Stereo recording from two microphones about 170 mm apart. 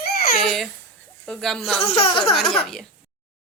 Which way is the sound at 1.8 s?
35° left (ahead or behind).